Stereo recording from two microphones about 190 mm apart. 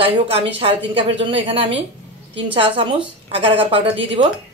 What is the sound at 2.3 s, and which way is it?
A woman's voice, 25° right (ahead or behind).